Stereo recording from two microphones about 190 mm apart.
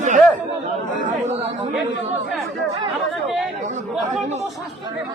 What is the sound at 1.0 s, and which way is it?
Chatter, 35° right (ahead or behind).